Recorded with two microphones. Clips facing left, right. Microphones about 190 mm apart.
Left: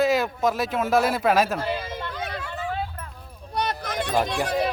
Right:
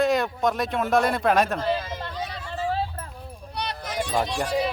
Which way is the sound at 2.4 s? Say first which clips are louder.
Right 6 dB; 30° right (ahead or behind).